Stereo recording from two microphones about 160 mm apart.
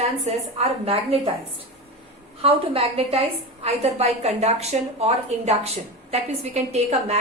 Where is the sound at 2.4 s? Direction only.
35° right (ahead or behind).